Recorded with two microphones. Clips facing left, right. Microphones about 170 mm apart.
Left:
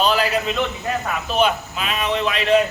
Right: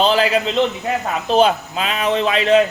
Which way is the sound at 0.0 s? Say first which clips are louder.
Right 3 dB; 25° right (ahead or behind).